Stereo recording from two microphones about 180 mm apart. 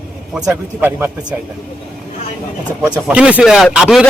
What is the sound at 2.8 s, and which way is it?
A woman's voice, 5° right (ahead or behind).